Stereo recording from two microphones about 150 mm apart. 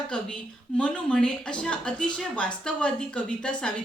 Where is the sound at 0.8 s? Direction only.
5° left (ahead or behind).